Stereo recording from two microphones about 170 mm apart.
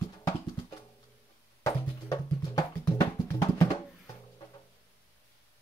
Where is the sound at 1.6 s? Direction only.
20° left (ahead or behind).